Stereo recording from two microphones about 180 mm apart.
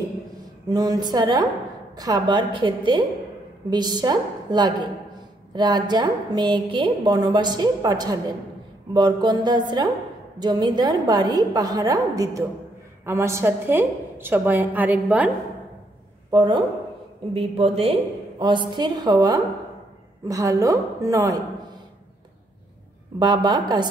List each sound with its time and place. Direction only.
0.7 s a woman's voice: 20° right (ahead or behind)
16.3 s a woman's voice: 25° right (ahead or behind)
23.1 s a woman's voice: 25° right (ahead or behind)